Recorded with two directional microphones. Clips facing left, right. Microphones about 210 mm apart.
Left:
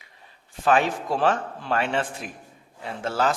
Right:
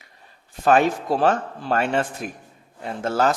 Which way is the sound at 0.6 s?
45° right (ahead or behind).